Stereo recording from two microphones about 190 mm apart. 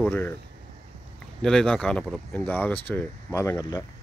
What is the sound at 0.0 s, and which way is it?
Speech, 10° left (ahead or behind).